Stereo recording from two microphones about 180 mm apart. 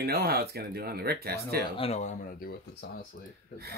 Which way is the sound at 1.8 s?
40° left (ahead or behind).